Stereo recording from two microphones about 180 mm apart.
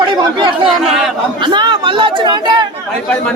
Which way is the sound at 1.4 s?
25° right (ahead or behind).